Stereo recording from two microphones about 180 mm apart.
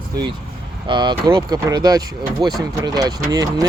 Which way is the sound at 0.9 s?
25° right (ahead or behind).